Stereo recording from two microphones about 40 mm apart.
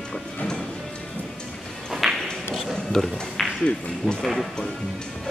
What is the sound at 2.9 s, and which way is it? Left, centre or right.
Speech, centre.